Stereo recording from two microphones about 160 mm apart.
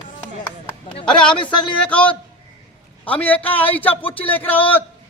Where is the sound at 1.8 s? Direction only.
5° left (ahead or behind).